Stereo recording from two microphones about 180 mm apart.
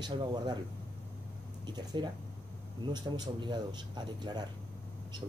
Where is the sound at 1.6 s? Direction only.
25° right (ahead or behind).